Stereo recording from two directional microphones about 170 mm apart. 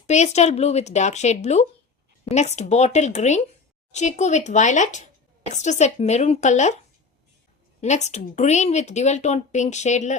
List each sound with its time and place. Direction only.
0.1 s a woman's voice: 40° left (ahead or behind)
7.8 s speech: 45° left (ahead or behind)